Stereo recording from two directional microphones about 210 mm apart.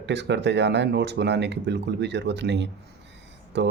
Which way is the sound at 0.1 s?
55° right (ahead or behind).